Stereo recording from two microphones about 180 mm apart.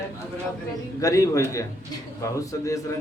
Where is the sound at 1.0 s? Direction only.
20° left (ahead or behind).